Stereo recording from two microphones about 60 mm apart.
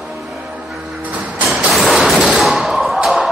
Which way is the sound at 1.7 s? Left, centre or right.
Centre.